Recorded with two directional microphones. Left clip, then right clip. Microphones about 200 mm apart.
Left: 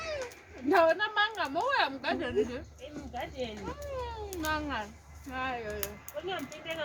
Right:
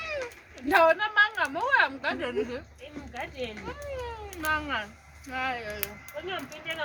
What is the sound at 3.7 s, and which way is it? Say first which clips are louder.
A woman's voice: right 2 dB; 15° right (ahead or behind).